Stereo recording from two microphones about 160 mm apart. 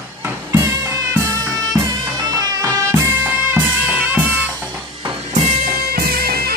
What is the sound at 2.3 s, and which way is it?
Music, 20° right (ahead or behind).